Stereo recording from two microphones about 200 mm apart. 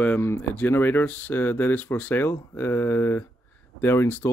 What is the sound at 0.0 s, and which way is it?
Speech, 10° left (ahead or behind).